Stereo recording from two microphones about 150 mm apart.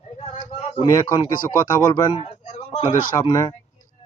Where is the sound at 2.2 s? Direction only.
45° left (ahead or behind).